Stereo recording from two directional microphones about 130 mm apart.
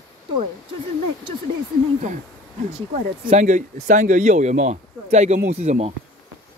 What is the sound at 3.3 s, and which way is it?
Speech, 75° right (ahead or behind).